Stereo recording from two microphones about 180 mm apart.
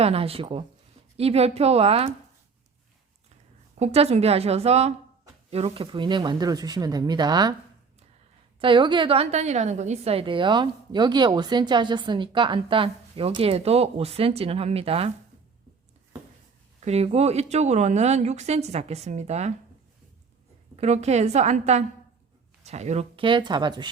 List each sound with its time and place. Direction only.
0.0 s a woman's voice: 35° right (ahead or behind)
3.8 s a woman's voice: 35° right (ahead or behind)
8.6 s a woman's voice: 25° right (ahead or behind)
16.8 s a woman's voice: 35° right (ahead or behind)
20.7 s a woman's voice: 40° right (ahead or behind)